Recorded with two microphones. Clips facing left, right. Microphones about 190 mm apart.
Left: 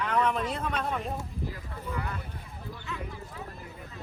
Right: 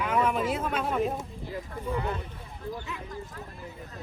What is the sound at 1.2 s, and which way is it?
Speech, 25° right (ahead or behind).